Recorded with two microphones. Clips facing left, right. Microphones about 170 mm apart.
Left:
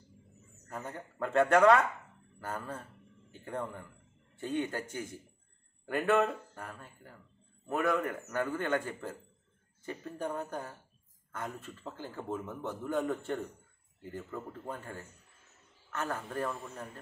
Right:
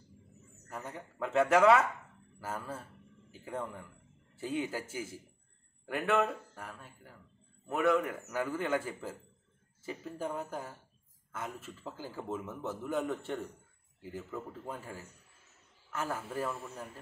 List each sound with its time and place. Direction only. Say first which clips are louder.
0.7 s a man's voice: left 1 dB; centre (ahead or behind)